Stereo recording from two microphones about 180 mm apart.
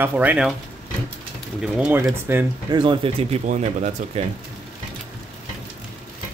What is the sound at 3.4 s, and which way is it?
Speech, 40° right (ahead or behind).